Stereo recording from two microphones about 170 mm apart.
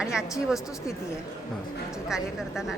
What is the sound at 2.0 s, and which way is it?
Speech, 5° right (ahead or behind).